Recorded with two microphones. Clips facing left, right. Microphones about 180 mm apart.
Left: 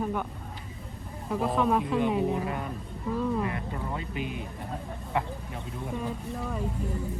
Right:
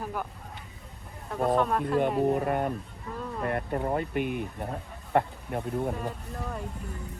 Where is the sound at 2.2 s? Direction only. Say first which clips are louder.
Right 4 dB; 55° right (ahead or behind).